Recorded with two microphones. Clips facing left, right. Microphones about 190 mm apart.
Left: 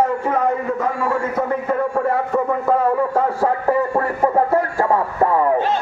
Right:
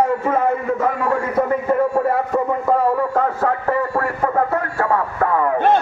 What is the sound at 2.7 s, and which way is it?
A man's voice, 10° left (ahead or behind).